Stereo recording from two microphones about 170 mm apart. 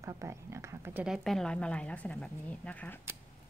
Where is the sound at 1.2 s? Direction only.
5° left (ahead or behind).